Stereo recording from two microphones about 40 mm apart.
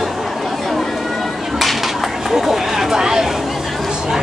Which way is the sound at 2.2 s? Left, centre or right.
Centre.